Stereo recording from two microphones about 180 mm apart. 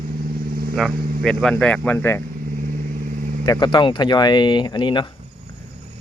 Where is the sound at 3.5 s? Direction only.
20° left (ahead or behind).